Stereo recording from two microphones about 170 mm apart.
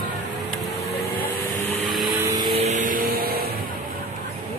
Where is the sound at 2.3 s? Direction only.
25° right (ahead or behind).